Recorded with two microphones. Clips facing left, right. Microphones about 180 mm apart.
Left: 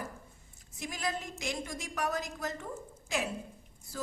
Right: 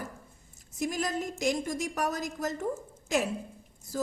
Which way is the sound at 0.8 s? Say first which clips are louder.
Right 6 dB; 45° right (ahead or behind).